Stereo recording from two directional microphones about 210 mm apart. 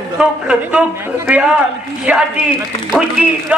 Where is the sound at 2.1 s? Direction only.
5° right (ahead or behind).